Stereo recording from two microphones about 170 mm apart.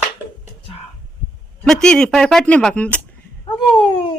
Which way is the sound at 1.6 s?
5° left (ahead or behind).